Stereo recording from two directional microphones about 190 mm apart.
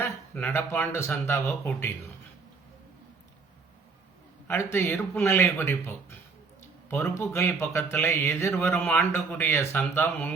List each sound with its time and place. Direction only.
0.0 s speech: 10° left (ahead or behind)
4.4 s speech: 10° left (ahead or behind)